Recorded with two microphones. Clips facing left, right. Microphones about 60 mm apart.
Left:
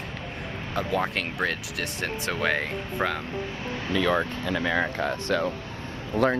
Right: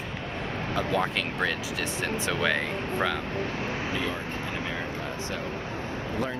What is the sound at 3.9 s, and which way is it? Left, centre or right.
Speech, left.